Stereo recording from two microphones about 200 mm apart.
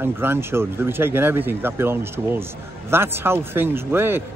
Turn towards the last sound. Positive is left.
turn(degrees=-10)  # may be behind; listen again after turning